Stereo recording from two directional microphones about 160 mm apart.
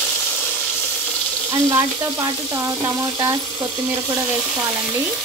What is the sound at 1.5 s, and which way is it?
Speech, 20° right (ahead or behind).